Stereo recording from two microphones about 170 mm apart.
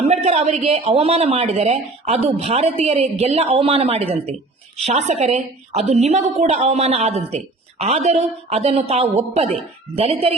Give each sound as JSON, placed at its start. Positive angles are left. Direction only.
{"t": 0.0, "sound": "a man's voice", "side_deg": -40}